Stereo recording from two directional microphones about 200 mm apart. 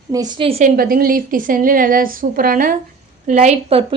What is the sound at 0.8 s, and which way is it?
A woman's voice, 45° right (ahead or behind).